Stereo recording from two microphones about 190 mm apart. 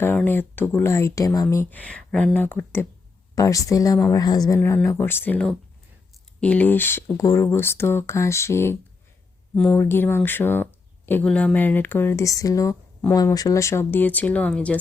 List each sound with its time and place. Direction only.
0.0 s speech: 10° left (ahead or behind)